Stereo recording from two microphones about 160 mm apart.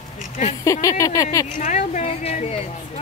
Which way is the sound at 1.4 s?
50° left (ahead or behind).